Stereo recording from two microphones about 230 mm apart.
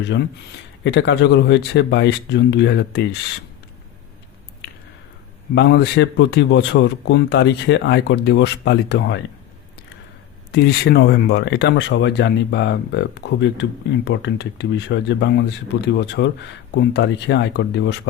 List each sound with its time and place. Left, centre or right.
0.9 s speech: left
5.5 s speech: left
10.5 s speech: left